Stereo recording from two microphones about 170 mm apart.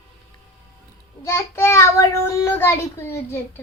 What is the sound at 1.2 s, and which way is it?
A child's voice, 15° left (ahead or behind).